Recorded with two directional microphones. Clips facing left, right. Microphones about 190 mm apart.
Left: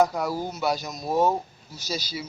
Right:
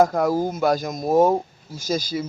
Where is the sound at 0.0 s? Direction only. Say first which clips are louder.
Right 5 dB; 50° right (ahead or behind).